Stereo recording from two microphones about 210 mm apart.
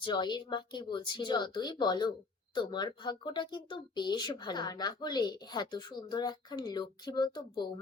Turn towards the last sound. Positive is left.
turn(degrees=20)  # may be behind; listen again after turning